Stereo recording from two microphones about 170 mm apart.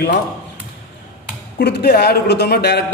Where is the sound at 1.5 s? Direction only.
75° left (ahead or behind).